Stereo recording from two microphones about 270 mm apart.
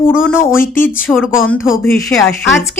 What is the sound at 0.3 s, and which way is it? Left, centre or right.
Speech, centre.